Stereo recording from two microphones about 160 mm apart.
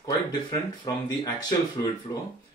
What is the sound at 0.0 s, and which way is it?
Speech, 25° left (ahead or behind).